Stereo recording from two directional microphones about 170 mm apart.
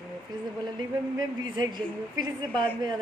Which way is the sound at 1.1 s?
25° right (ahead or behind).